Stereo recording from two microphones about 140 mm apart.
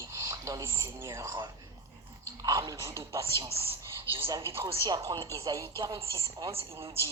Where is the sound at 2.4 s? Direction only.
25° right (ahead or behind).